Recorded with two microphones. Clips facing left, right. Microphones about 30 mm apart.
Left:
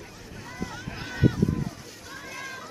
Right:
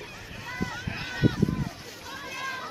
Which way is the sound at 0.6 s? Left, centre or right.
Centre.